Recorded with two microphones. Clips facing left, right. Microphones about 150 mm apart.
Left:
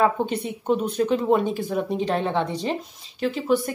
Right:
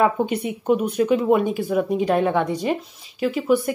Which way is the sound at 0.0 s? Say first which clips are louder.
Right 2 dB; 15° right (ahead or behind).